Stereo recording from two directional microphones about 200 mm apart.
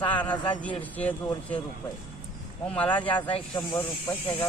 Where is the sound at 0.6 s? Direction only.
5° left (ahead or behind).